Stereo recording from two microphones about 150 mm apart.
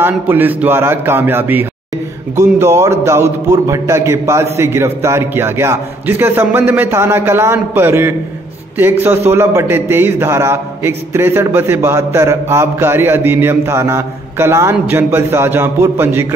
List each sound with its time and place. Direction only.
0.0 s a man's voice: 15° right (ahead or behind)